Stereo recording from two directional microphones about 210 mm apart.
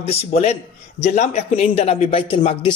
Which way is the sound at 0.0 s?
30° left (ahead or behind).